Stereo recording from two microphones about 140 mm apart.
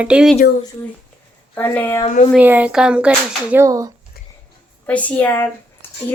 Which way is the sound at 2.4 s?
10° right (ahead or behind).